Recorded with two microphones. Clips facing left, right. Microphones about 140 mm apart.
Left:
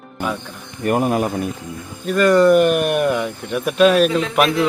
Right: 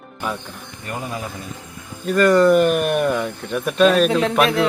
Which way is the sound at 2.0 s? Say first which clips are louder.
Left 1 dB; centre (ahead or behind).